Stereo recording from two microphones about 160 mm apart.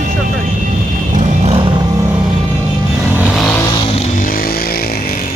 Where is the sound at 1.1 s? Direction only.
40° right (ahead or behind).